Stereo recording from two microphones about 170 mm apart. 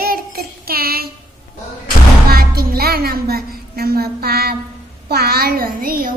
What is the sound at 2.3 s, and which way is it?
A woman's voice, 65° right (ahead or behind).